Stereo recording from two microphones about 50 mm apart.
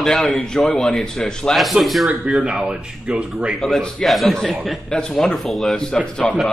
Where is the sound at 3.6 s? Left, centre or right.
Centre.